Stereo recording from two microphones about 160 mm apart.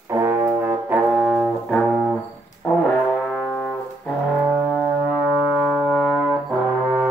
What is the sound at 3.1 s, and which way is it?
Brass instrument, 5° left (ahead or behind).